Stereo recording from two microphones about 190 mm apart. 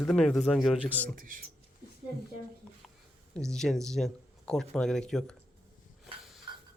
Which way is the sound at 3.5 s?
5° left (ahead or behind).